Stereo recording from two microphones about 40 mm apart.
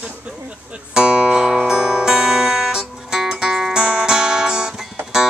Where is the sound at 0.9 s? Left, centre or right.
Right.